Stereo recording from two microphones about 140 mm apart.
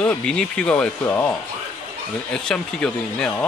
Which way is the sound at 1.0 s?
15° left (ahead or behind).